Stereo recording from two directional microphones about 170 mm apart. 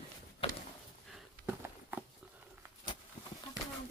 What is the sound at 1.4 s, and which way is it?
Walk, 15° right (ahead or behind).